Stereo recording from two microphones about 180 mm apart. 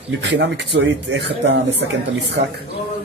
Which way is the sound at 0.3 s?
75° right (ahead or behind).